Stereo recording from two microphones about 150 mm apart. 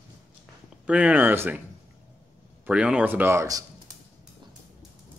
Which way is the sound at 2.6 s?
5° right (ahead or behind).